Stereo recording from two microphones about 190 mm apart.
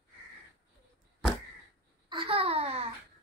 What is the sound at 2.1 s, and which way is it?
Babbling, 25° right (ahead or behind).